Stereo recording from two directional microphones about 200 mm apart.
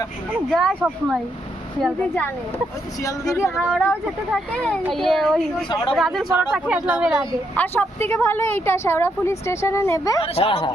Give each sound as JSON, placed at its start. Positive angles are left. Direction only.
{"t": 0.3, "sound": "a child's voice", "side_deg": 0}
{"t": 3.5, "sound": "a child's voice", "side_deg": 0}
{"t": 7.5, "sound": "speech", "side_deg": 10}
{"t": 10.2, "sound": "speech", "side_deg": 30}